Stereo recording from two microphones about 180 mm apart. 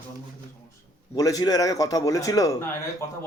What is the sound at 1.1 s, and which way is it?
Speech, 20° left (ahead or behind).